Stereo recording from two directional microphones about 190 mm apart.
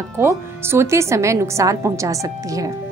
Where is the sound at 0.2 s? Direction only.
15° right (ahead or behind).